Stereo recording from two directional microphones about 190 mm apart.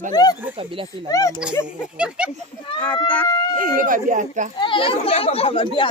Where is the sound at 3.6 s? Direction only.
45° right (ahead or behind).